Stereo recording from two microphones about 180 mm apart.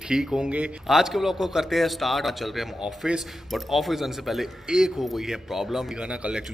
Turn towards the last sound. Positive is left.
turn(degrees=-5)  # may be behind; listen again after turning